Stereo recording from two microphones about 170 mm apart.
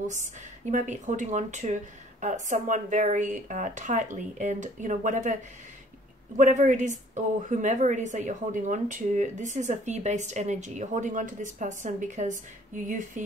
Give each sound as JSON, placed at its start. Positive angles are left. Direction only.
{"t": 0.0, "sound": "speech", "side_deg": -45}